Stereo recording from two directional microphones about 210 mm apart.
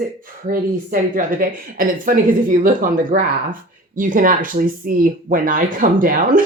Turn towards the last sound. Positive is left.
turn(degrees=-40)  # may be behind; listen again after turning